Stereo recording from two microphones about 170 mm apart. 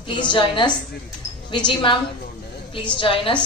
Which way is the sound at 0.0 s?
30° left (ahead or behind).